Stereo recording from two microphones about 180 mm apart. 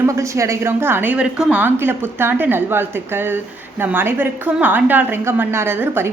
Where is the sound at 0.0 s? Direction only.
15° right (ahead or behind).